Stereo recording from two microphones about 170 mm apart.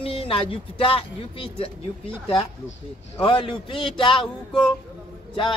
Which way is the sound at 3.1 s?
30° left (ahead or behind).